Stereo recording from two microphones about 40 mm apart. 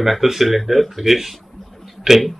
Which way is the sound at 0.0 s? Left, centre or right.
Centre.